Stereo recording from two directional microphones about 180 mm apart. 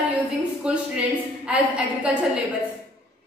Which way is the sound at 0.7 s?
5° right (ahead or behind).